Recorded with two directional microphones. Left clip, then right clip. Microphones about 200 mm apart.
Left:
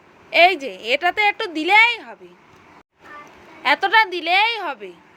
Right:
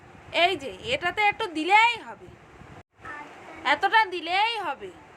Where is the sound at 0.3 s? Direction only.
30° left (ahead or behind).